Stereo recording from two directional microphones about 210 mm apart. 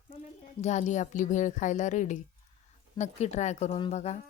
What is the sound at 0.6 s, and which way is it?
A woman's voice, 35° left (ahead or behind).